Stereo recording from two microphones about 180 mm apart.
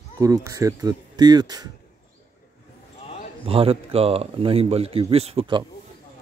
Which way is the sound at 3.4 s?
30° right (ahead or behind).